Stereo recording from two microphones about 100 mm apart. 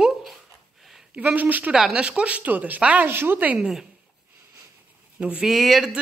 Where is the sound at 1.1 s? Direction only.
15° right (ahead or behind).